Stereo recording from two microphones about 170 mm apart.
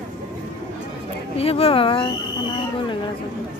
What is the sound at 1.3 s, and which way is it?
Speech, 35° left (ahead or behind).